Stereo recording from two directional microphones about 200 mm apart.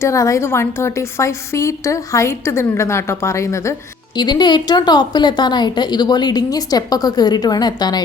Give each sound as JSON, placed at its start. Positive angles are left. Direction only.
{"t": 0.0, "sound": "a woman's voice", "side_deg": 15}